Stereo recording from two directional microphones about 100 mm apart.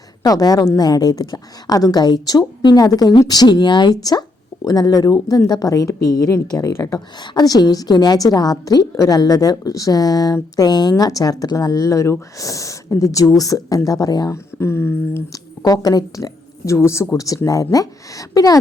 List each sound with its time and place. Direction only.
0.2 s a woman's voice: 40° left (ahead or behind)
14.6 s speech: 25° left (ahead or behind)
15.3 s speech: 35° left (ahead or behind)